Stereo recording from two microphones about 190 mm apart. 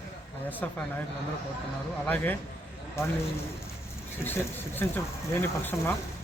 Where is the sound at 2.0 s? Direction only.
10° left (ahead or behind).